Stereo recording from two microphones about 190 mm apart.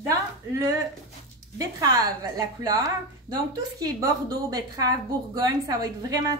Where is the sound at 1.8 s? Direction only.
20° right (ahead or behind).